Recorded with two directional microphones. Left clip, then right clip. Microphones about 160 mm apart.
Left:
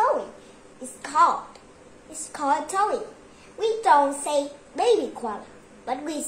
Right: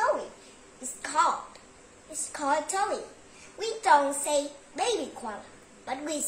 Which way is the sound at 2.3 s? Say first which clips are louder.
Left 4 dB; 15° left (ahead or behind).